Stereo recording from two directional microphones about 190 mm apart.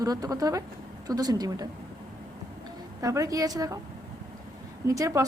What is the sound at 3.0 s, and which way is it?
Speech, 15° right (ahead or behind).